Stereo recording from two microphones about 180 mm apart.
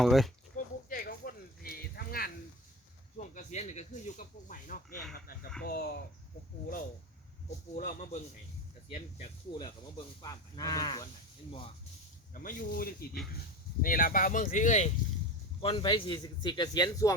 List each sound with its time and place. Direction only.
0.0 s speech: centre (ahead or behind)
0.5 s a sound: 50° left (ahead or behind)
3.2 s speech: 40° left (ahead or behind); by 6.0 s 60° left (ahead or behind)
7.8 s speech: 45° left (ahead or behind)
8.9 s a man's voice: 35° left (ahead or behind)
12.3 s speech: 50° left (ahead or behind)
15.6 s a man's voice: 25° left (ahead or behind)